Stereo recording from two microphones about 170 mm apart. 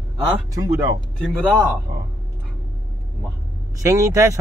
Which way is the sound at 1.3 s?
5° left (ahead or behind).